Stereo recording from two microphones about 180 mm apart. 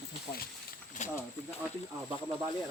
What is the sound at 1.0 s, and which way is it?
Speech, 45° left (ahead or behind).